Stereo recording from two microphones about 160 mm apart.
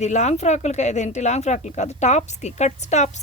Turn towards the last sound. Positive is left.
turn(degrees=45)  # may be behind; listen again after turning